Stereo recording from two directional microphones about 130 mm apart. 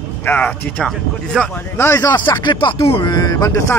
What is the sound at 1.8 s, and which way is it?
Speech, 20° left (ahead or behind).